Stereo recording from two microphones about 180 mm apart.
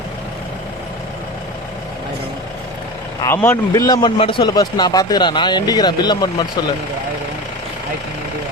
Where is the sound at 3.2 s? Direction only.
15° left (ahead or behind).